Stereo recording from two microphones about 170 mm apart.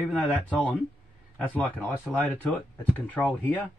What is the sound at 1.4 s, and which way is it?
Speech, 10° left (ahead or behind).